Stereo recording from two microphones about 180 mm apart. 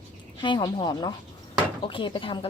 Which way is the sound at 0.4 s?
25° left (ahead or behind).